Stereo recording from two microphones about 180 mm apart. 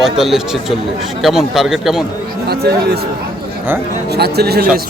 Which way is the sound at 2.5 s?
60° right (ahead or behind).